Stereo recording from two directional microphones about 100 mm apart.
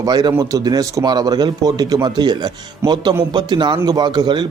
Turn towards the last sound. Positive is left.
turn(degrees=-50)  # may be behind; listen again after turning